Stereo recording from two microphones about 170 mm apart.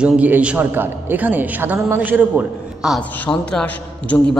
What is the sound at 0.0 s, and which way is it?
A man's voice, 10° right (ahead or behind).